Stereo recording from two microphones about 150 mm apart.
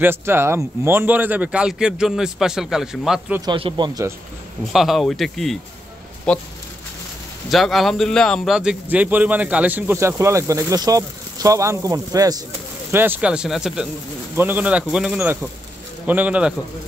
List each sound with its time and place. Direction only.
0.0 s speech: 15° right (ahead or behind)
3.5 s speech: 35° right (ahead or behind)
4.7 s speech: centre (ahead or behind)
7.5 s speech: centre (ahead or behind)